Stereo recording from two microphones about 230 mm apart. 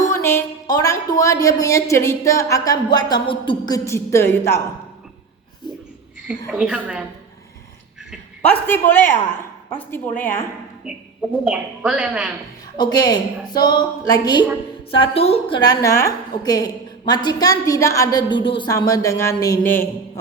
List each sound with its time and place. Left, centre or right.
0.1 s music: centre
1.2 s a woman's voice: centre
6.5 s speech: centre
8.4 s a woman's voice: centre
10.9 s speech: centre
12.7 s a woman's voice: centre